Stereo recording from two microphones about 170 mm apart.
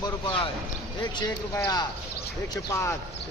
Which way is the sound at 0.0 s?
30° left (ahead or behind).